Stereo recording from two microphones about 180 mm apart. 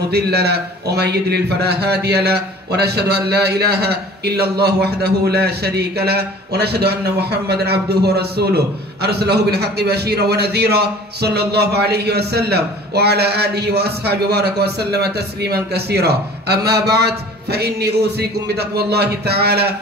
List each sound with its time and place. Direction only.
0.1 s speech: 65° right (ahead or behind)